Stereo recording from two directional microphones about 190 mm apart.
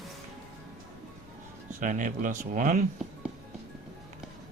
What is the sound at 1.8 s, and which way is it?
Speech, 45° right (ahead or behind).